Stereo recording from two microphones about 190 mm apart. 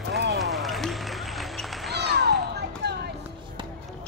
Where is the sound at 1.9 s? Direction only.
60° right (ahead or behind).